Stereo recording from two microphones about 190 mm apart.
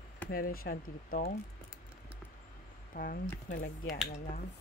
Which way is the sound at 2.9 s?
50° left (ahead or behind).